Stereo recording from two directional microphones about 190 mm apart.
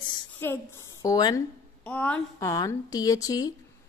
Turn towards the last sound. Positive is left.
turn(degrees=20)  # may be behind; listen again after turning